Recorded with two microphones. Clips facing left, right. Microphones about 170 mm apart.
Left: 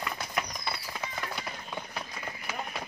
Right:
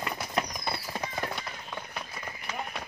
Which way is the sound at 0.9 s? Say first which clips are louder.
Right 4 dB; 35° right (ahead or behind).